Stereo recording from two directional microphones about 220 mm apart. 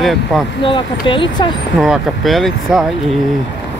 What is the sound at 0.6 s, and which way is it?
Speech, 20° left (ahead or behind).